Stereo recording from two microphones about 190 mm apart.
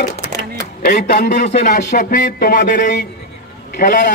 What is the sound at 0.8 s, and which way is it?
Speech, 60° left (ahead or behind).